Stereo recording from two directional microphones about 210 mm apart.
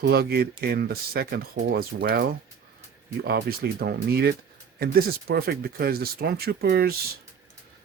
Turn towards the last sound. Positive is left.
turn(degrees=-45)  # may be behind; listen again after turning